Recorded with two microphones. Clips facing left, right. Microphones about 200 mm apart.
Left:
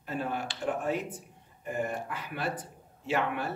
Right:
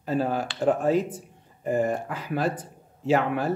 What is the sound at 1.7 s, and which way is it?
Speech, 90° right.